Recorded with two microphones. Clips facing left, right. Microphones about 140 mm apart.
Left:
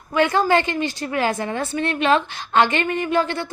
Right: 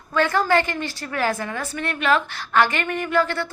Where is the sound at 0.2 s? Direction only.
20° left (ahead or behind).